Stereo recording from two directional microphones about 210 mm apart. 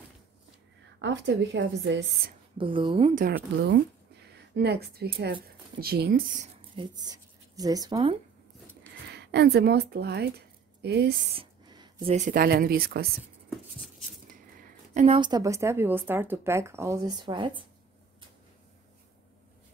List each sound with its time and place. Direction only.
1.0 s a woman's voice: 55° right (ahead or behind)
2.5 s a woman's voice: 25° right (ahead or behind)
3.2 s a woman's voice: 45° right (ahead or behind)
6.4 s speech: 20° right (ahead or behind)
9.0 s a woman's voice: 55° right (ahead or behind)
11.3 s a sound: 25° right (ahead or behind)
12.3 s a woman's voice: 45° right (ahead or behind)
15.0 s speech: 25° right (ahead or behind)